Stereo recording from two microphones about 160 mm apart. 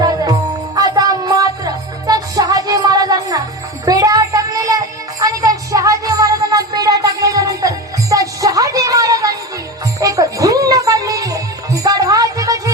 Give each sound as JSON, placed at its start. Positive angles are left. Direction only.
{"t": 0.0, "sound": "music", "side_deg": -25}
{"t": 3.8, "sound": "child singing", "side_deg": -25}
{"t": 5.2, "sound": "music", "side_deg": -20}